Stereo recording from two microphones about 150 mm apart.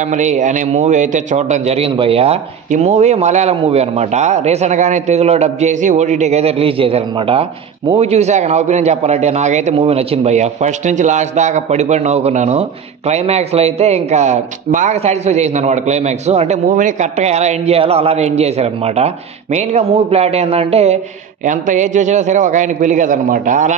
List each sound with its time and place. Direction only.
0.0 s a man's voice: 50° right (ahead or behind)
16.6 s a man's voice: 60° right (ahead or behind)
21.5 s a man's voice: 55° right (ahead or behind)